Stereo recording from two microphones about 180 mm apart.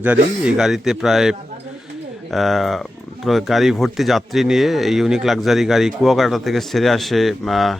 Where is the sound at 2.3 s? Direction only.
Centre (ahead or behind).